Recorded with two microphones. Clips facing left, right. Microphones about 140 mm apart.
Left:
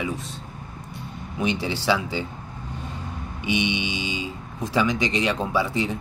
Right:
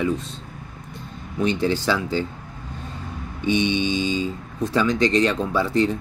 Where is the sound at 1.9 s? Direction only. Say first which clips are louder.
Right 1 dB; 15° left (ahead or behind).